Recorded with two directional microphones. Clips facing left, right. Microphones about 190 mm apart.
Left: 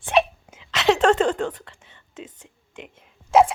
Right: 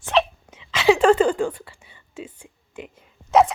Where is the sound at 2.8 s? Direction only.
Centre (ahead or behind).